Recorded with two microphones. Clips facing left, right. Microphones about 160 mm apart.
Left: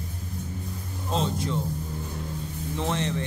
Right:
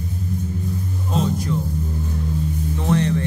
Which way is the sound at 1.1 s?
25° left (ahead or behind).